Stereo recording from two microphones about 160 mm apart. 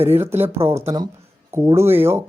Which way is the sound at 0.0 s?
15° right (ahead or behind).